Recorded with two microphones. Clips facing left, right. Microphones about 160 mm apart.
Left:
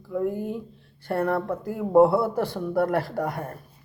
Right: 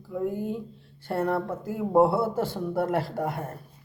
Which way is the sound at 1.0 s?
20° right (ahead or behind).